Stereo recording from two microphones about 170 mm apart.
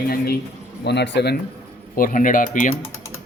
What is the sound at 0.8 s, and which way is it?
Speech, 80° left.